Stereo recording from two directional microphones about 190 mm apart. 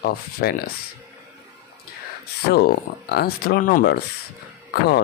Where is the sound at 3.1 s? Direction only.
55° left (ahead or behind).